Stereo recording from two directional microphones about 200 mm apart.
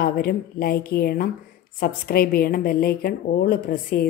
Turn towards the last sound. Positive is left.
turn(degrees=45)  # may be behind; listen again after turning